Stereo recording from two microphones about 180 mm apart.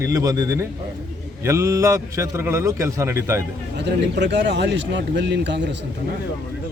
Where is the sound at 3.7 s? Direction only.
75° right (ahead or behind).